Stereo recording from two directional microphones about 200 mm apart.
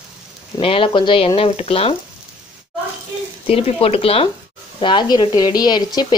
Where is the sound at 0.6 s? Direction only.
25° left (ahead or behind).